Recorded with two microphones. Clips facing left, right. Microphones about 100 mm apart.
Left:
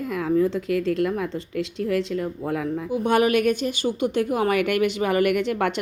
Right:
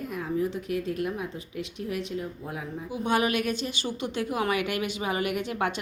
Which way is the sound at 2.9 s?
50° left (ahead or behind).